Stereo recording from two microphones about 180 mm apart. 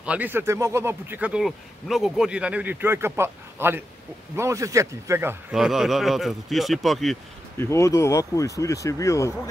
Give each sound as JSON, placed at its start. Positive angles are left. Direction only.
{"t": 0.0, "sound": "speech", "side_deg": -10}
{"t": 7.5, "sound": "speech", "side_deg": 15}